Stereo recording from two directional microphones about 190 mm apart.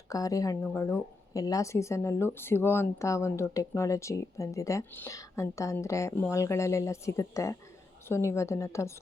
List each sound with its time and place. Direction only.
0.1 s a woman's voice: 20° left (ahead or behind)